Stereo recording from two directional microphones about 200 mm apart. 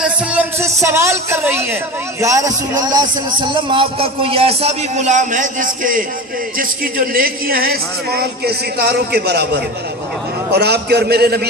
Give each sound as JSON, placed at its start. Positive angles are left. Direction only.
{"t": 0.0, "sound": "a man's voice", "side_deg": -10}
{"t": 10.5, "sound": "a man's voice", "side_deg": -55}